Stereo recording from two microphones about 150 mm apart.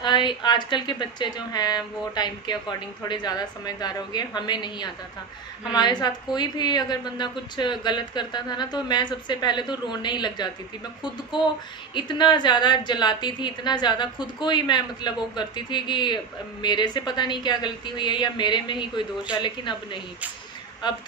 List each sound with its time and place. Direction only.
0.0 s a woman's voice: 30° left (ahead or behind)
11.9 s a woman's voice: 30° left (ahead or behind)